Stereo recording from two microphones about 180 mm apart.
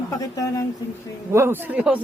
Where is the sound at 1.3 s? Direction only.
15° right (ahead or behind).